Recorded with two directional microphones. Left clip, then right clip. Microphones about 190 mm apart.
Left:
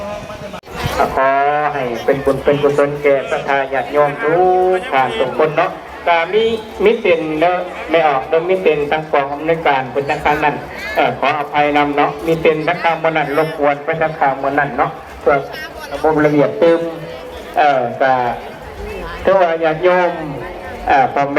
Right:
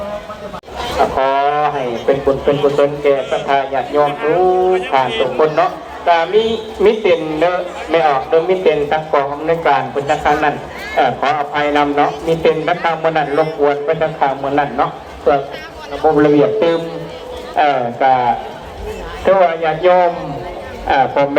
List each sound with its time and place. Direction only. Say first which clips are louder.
1.1 s speech: left 3 dB; 20° left (ahead or behind)
3.4 s a man's voice: right 1 dB; 5° right (ahead or behind)
4.3 s a man's voice: even; 20° right (ahead or behind)
6.1 s a man's voice: right 1 dB; 35° right (ahead or behind); by 16.8 s 40° left (ahead or behind)
17.6 s a man's voice: left 1 dB; 50° left (ahead or behind)